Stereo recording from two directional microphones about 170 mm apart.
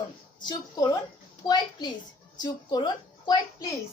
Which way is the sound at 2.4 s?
25° left (ahead or behind).